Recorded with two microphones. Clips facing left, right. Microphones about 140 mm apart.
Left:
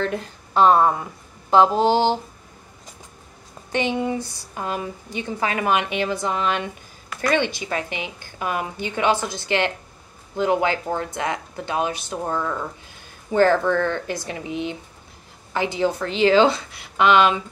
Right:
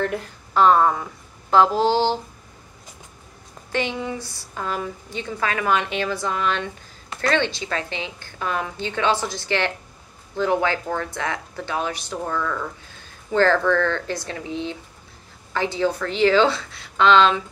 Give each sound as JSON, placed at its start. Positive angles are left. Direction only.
{"t": 0.1, "sound": "a woman's voice", "side_deg": 20}
{"t": 3.7, "sound": "speech", "side_deg": 15}